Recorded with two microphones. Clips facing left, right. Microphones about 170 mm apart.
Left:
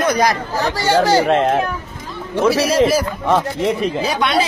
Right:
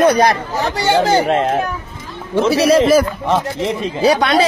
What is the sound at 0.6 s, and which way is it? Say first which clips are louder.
Speech: even; 20° right (ahead or behind).